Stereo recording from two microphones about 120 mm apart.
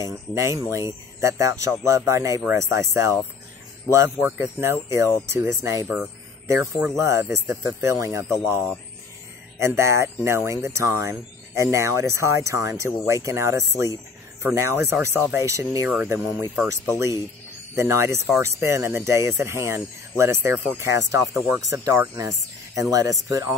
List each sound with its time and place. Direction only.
0.0 s speech: 25° right (ahead or behind)
17.7 s speech: 25° right (ahead or behind)